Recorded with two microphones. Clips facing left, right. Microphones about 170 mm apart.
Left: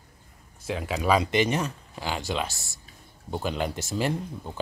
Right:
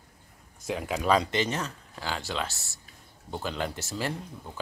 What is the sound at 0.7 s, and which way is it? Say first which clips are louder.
Speech: left 1 dB; centre (ahead or behind).